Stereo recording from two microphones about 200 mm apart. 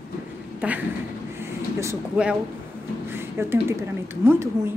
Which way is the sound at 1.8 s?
5° right (ahead or behind).